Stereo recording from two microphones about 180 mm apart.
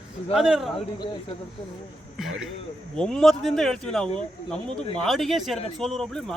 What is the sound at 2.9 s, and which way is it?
Speech, 5° left (ahead or behind).